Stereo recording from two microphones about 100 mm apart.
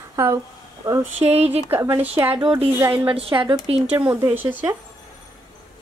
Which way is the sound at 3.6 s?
75° right (ahead or behind).